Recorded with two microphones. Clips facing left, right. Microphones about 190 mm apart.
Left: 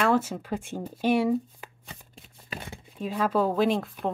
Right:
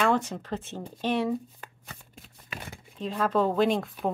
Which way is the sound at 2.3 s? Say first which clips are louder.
Left 3 dB; 25° left (ahead or behind).